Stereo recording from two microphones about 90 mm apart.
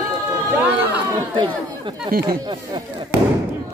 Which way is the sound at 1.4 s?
55° right (ahead or behind).